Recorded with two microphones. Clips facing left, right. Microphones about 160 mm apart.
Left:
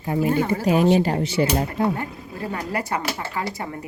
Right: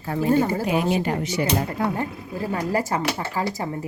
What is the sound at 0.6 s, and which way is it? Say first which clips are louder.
Speech: left 4 dB; 35° left (ahead or behind).